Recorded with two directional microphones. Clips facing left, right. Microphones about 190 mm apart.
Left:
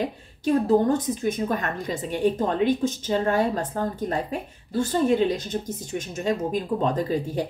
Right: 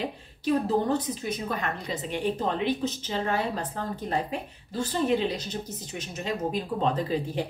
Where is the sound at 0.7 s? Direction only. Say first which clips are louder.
Left 5 dB; 45° left (ahead or behind).